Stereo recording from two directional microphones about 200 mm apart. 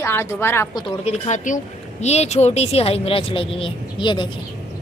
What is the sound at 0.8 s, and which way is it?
Speech, 30° left (ahead or behind).